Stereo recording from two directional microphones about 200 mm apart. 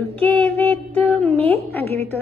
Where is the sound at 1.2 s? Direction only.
30° right (ahead or behind).